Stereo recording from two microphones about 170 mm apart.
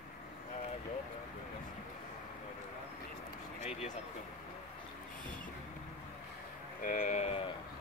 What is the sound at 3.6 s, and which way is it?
Vehicle, 40° left (ahead or behind).